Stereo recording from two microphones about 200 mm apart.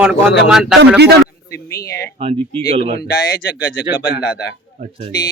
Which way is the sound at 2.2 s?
30° right (ahead or behind).